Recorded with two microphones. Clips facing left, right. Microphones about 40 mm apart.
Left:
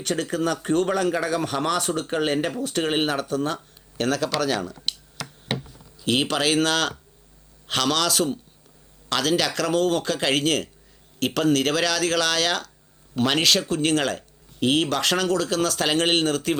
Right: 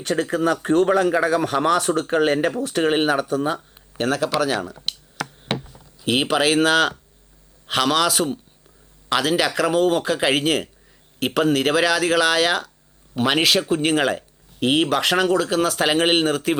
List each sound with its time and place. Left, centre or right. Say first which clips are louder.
0.0 s speech: right 4 dB; centre